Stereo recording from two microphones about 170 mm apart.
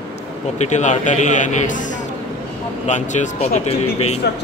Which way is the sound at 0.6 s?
45° left (ahead or behind).